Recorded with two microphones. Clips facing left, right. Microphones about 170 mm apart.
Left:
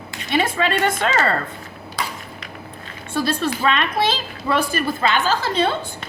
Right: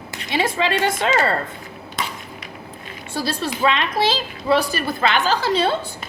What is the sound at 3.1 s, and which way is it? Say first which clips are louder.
A woman's voice: left 3 dB; 55° left (ahead or behind).